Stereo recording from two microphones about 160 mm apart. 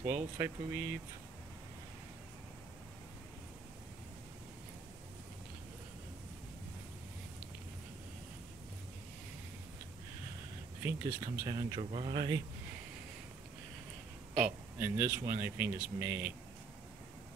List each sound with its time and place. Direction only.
0.0 s speech: 15° right (ahead or behind)
10.8 s speech: 15° right (ahead or behind)
11.4 s speech: 30° right (ahead or behind)
14.4 s speech: 10° right (ahead or behind)